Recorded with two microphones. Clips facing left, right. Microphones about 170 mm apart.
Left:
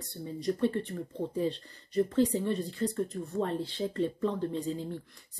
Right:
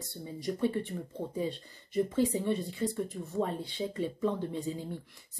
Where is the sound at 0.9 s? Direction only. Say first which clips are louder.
Left 2 dB; centre (ahead or behind).